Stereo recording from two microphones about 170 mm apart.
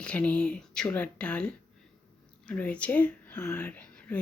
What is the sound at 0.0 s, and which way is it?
Speech, 5° left (ahead or behind).